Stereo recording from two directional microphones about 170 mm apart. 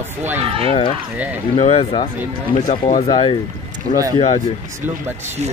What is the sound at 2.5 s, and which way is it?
Speech, 45° left (ahead or behind).